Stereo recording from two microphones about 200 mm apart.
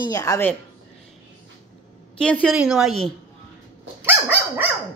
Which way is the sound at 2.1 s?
5° left (ahead or behind).